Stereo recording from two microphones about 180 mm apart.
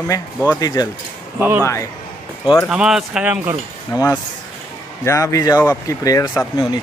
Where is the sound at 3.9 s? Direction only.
15° left (ahead or behind).